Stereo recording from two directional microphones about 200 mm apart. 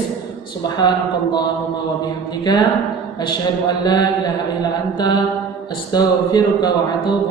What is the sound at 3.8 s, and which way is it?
Speech, 20° left (ahead or behind).